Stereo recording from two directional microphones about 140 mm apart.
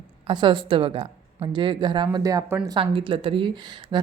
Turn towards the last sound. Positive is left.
turn(degrees=-35)  # may be behind; listen again after turning